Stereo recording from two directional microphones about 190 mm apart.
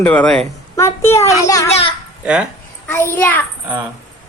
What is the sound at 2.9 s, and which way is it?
Speech, 10° left (ahead or behind).